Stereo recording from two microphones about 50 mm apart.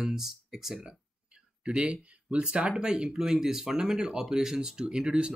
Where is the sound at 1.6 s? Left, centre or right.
Centre.